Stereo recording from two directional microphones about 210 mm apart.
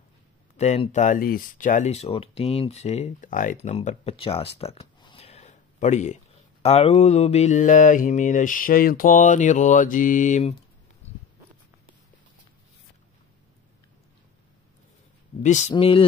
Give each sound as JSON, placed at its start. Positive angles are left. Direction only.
{"t": 0.6, "sound": "speech", "side_deg": 35}
{"t": 15.4, "sound": "speech", "side_deg": 35}